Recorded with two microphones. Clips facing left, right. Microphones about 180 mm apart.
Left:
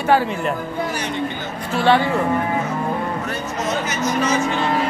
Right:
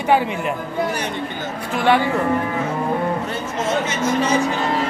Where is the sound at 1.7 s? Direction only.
15° right (ahead or behind).